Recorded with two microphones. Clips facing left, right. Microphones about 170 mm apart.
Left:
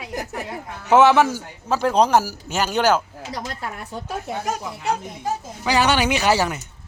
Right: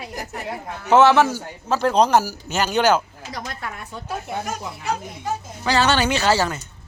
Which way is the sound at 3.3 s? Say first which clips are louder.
Left 2 dB; 30° left (ahead or behind).